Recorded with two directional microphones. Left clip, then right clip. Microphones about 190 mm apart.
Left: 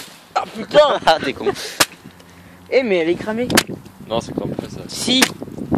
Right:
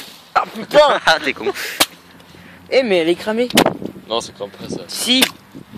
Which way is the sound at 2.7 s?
50° right (ahead or behind).